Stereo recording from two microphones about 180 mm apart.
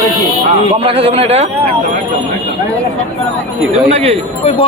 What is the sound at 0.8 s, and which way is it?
Speech, 30° right (ahead or behind).